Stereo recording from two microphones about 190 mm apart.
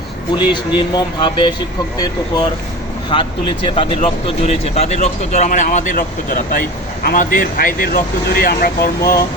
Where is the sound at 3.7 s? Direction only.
30° left (ahead or behind); by 8.7 s 50° left (ahead or behind).